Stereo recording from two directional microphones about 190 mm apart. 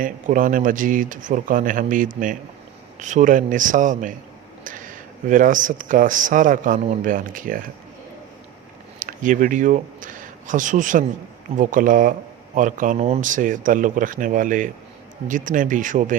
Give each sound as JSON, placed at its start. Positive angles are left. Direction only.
{"t": 0.0, "sound": "speech", "side_deg": -45}
{"t": 9.0, "sound": "speech", "side_deg": -45}